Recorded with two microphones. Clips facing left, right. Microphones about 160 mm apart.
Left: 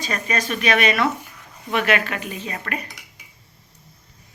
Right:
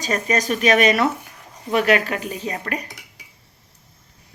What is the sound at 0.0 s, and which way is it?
Speech, 40° right (ahead or behind).